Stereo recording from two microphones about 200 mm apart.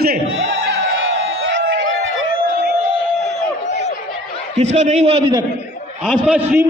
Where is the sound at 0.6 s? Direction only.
70° right (ahead or behind).